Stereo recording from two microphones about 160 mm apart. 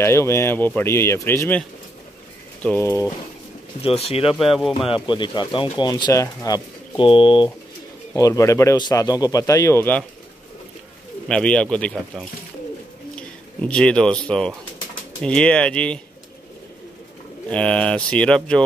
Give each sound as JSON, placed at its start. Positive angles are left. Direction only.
{"t": 0.0, "sound": "speech", "side_deg": 15}
{"t": 2.6, "sound": "speech", "side_deg": 15}
{"t": 3.8, "sound": "speech", "side_deg": 40}
{"t": 4.3, "sound": "speech", "side_deg": 0}
{"t": 4.8, "sound": "speech", "side_deg": 30}
{"t": 8.2, "sound": "speech", "side_deg": 20}
{"t": 11.2, "sound": "speech", "side_deg": 5}
{"t": 17.5, "sound": "speech", "side_deg": 5}